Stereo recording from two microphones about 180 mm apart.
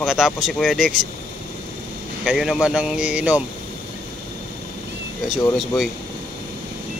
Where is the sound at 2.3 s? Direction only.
5° right (ahead or behind).